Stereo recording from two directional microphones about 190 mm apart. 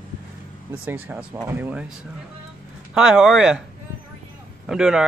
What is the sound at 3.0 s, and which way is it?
Speech, 5° right (ahead or behind).